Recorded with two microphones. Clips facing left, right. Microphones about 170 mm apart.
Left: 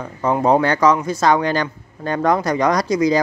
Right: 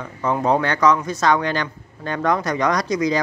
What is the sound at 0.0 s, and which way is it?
Speech, 30° left (ahead or behind).